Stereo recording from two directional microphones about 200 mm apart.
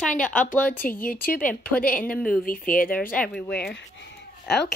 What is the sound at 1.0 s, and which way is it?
Speech, 45° left (ahead or behind).